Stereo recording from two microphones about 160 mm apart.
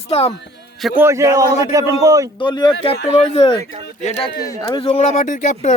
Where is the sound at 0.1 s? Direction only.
40° left (ahead or behind).